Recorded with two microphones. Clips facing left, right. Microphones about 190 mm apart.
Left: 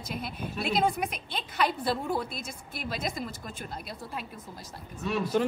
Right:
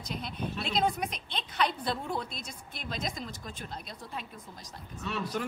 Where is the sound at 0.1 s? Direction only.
5° left (ahead or behind).